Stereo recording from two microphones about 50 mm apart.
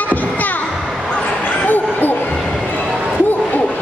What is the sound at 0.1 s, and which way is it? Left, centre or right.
Music, left.